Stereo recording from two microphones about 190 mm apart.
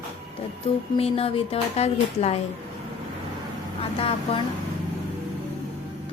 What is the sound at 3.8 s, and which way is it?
Speech, 30° left (ahead or behind).